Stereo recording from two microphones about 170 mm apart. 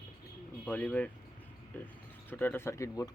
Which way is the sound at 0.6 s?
10° left (ahead or behind).